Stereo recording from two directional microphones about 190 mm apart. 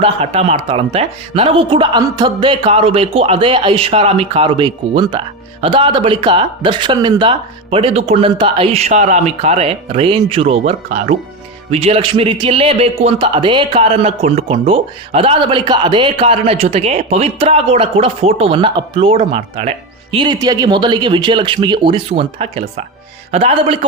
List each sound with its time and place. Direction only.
0.0 s a man's voice: 35° right (ahead or behind)
10.7 s a man's voice: 40° right (ahead or behind)